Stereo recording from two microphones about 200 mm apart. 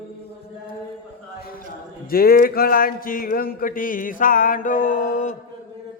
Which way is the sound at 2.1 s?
50° left (ahead or behind).